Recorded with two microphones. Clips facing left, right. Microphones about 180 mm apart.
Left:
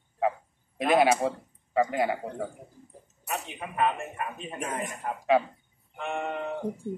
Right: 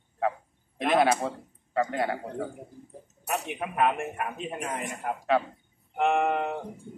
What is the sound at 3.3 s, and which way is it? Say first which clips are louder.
A man's voice: right 4 dB; 60° right (ahead or behind).